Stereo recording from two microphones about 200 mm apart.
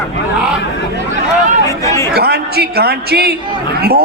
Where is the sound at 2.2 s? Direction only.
50° right (ahead or behind).